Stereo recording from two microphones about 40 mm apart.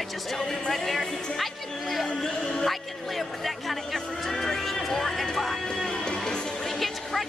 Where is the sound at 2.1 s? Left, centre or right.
Centre.